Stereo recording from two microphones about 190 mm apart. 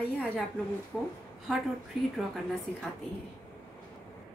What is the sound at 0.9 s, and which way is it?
Speech, centre (ahead or behind).